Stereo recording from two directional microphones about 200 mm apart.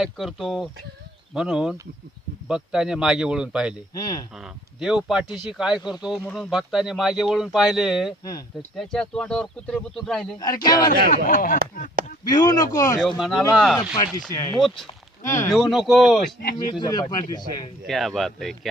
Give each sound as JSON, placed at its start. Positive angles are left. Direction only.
{"t": 0.0, "sound": "speech", "side_deg": 0}
{"t": 3.9, "sound": "speech", "side_deg": 20}
{"t": 4.4, "sound": "speech", "side_deg": -5}
{"t": 8.2, "sound": "speech", "side_deg": 20}
{"t": 8.7, "sound": "speech", "side_deg": 0}
{"t": 10.4, "sound": "speech", "side_deg": 20}
{"t": 11.1, "sound": "speech", "side_deg": 45}
{"t": 12.2, "sound": "speech", "side_deg": 20}
{"t": 13.0, "sound": "speech", "side_deg": 0}
{"t": 13.7, "sound": "speech", "side_deg": 20}
{"t": 14.5, "sound": "speech", "side_deg": 0}
{"t": 16.4, "sound": "speech", "side_deg": 45}
{"t": 16.8, "sound": "speech", "side_deg": 20}
{"t": 17.8, "sound": "speech", "side_deg": 0}